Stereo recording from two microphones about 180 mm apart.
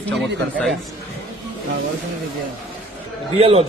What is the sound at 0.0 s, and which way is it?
Speech, centre (ahead or behind).